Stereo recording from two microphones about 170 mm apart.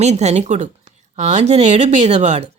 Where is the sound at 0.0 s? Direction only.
40° right (ahead or behind).